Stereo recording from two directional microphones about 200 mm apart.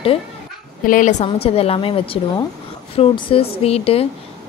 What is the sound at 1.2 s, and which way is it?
A woman's voice, 30° left (ahead or behind).